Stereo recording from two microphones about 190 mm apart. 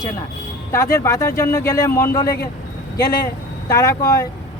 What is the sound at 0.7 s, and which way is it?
Speech, 15° left (ahead or behind).